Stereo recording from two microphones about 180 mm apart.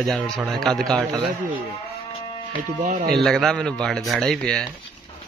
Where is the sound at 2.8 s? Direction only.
50° right (ahead or behind).